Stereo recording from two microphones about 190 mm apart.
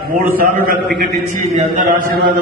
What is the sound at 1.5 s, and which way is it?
Speech, 40° right (ahead or behind).